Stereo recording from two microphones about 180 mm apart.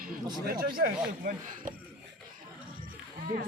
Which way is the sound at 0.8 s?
55° right (ahead or behind).